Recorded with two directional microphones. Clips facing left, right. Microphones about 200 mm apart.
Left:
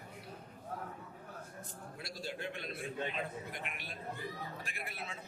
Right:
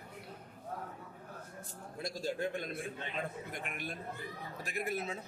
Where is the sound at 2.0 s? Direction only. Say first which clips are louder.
Right 7 dB; 45° right (ahead or behind).